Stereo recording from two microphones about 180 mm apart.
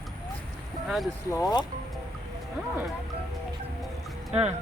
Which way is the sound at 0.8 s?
Centre (ahead or behind).